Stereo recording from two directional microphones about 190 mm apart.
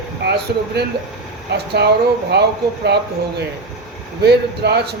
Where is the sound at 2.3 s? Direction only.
60° right (ahead or behind).